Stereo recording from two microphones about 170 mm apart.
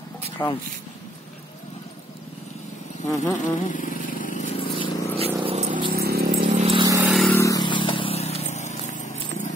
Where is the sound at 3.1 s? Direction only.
20° left (ahead or behind).